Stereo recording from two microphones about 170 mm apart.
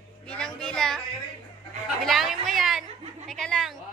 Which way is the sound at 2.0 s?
Centre (ahead or behind).